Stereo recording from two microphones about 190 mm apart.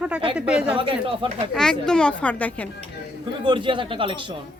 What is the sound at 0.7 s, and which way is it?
Speech, 25° right (ahead or behind).